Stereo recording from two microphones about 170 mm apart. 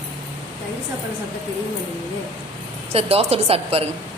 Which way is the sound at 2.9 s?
35° right (ahead or behind).